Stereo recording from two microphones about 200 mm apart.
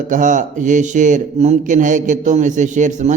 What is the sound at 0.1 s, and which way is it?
A man's voice, 40° right (ahead or behind).